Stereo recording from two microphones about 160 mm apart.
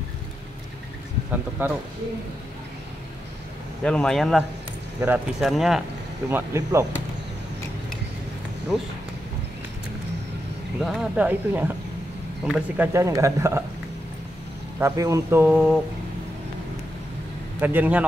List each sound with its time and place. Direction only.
1.6 s a man's voice: 15° right (ahead or behind)
3.8 s speech: 5° left (ahead or behind)
6.3 s speech: 20° right (ahead or behind)
10.8 s a man's voice: 5° right (ahead or behind)
14.8 s a man's voice: 20° right (ahead or behind)
17.6 s a man's voice: 10° right (ahead or behind)